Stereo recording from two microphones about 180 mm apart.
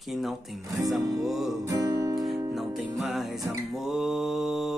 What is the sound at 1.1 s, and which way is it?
Music, centre (ahead or behind).